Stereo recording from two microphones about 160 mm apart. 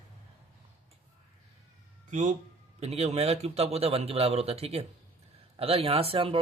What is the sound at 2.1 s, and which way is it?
Speech, 50° right (ahead or behind).